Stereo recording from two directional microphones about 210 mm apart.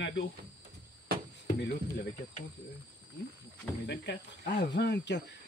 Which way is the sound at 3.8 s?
55° left (ahead or behind).